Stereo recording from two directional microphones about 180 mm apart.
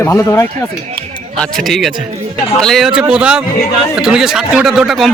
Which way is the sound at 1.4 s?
Centre (ahead or behind).